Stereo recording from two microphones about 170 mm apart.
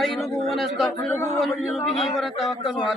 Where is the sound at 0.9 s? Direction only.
15° left (ahead or behind).